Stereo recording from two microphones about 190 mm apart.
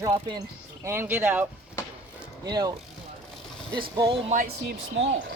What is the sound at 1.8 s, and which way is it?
Music, 15° left (ahead or behind).